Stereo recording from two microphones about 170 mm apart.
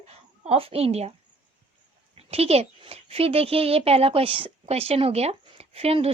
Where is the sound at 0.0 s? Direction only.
35° right (ahead or behind).